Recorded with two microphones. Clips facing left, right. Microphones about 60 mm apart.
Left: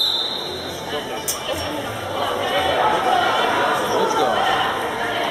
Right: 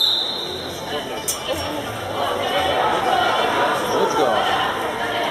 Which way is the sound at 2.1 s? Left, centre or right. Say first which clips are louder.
Even; centre.